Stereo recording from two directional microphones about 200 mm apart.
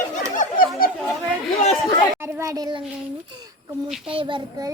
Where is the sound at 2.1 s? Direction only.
15° right (ahead or behind).